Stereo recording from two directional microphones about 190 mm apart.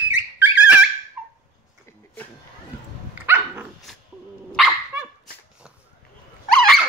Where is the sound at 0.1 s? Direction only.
5° right (ahead or behind).